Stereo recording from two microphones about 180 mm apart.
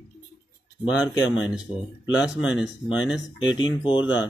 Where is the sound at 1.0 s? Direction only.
5° right (ahead or behind).